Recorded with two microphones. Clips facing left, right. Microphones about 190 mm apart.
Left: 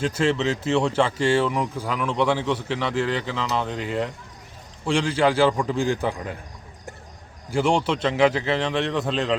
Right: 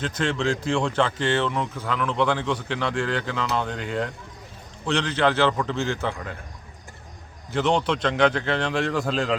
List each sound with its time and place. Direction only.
0.0 s a man's voice: 5° left (ahead or behind)
7.5 s speech: 10° left (ahead or behind)